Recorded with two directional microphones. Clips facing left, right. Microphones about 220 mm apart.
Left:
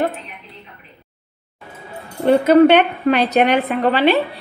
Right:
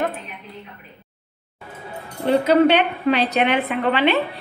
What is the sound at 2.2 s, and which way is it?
A woman's voice, 50° left (ahead or behind).